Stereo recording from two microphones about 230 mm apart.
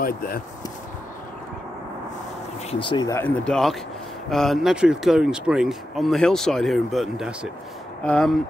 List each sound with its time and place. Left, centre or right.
0.0 s speech: left
2.7 s speech: left; by 8.4 s centre